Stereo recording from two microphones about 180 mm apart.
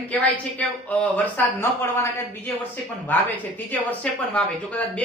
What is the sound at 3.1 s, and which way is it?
Speech, 10° left (ahead or behind).